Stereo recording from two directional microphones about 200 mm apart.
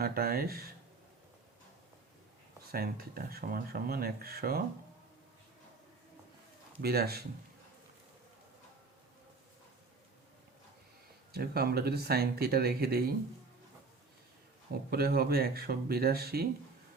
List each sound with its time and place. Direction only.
0.0 s speech: 50° right (ahead or behind)
2.7 s speech: 50° right (ahead or behind)
6.8 s speech: 50° right (ahead or behind)
11.3 s speech: 50° right (ahead or behind)
14.8 s speech: 50° right (ahead or behind)